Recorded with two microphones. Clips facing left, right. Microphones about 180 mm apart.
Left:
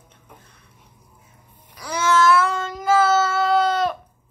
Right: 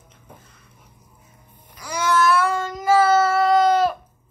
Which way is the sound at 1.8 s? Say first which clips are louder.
Left 1 dB; 15° right (ahead or behind).